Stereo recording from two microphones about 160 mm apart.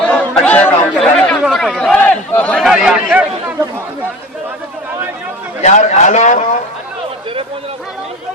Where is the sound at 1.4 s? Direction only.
Centre (ahead or behind).